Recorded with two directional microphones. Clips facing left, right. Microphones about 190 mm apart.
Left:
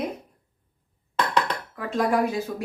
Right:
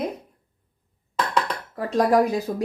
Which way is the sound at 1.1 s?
Centre (ahead or behind).